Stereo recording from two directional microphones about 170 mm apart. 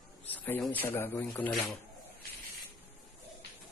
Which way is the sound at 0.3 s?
10° left (ahead or behind).